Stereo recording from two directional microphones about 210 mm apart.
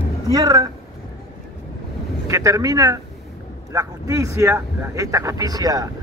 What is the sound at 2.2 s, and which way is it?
Speech, 15° right (ahead or behind).